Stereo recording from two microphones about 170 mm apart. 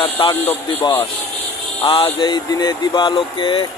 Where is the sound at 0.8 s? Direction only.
30° left (ahead or behind).